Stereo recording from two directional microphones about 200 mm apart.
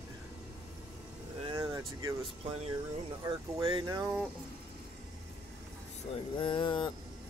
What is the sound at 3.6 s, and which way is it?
Speech, 20° right (ahead or behind).